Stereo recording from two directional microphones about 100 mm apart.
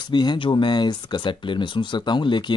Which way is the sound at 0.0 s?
50° left (ahead or behind).